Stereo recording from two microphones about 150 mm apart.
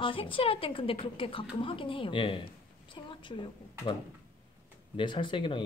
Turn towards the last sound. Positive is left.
turn(degrees=35)  # may be behind; listen again after turning